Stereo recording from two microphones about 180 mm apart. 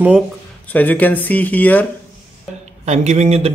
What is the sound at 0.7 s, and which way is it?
A man's voice, 10° left (ahead or behind).